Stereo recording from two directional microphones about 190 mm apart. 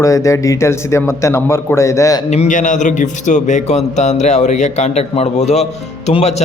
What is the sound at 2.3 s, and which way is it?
A man's voice, 40° left (ahead or behind).